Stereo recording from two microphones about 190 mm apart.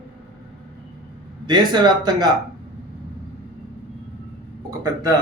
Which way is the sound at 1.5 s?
25° right (ahead or behind).